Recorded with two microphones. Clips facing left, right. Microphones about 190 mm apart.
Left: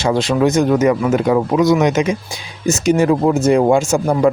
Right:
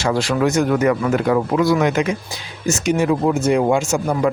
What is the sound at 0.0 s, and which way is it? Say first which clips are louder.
Speech: left 3 dB; 20° left (ahead or behind).